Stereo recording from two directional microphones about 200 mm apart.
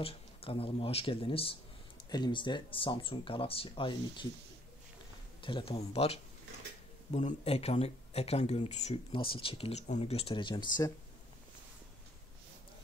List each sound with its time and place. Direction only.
0.0 s speech: 30° left (ahead or behind)
5.4 s speech: 25° left (ahead or behind)